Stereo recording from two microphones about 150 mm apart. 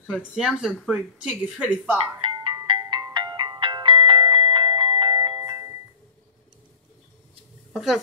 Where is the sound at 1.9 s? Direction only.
35° right (ahead or behind).